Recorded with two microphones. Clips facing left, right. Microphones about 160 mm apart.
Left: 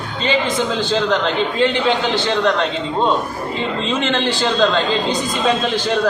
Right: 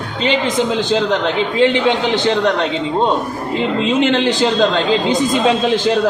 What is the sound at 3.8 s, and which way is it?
A man's voice, 15° right (ahead or behind).